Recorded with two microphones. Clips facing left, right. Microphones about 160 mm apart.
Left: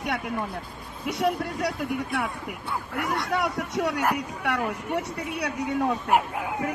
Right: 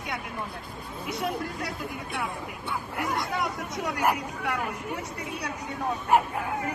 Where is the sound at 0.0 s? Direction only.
65° left (ahead or behind).